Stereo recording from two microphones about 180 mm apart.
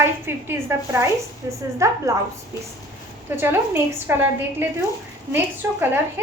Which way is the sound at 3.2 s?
10° right (ahead or behind).